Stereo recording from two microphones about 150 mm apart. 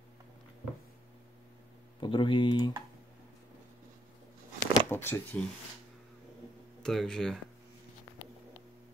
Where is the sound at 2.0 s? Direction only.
35° left (ahead or behind).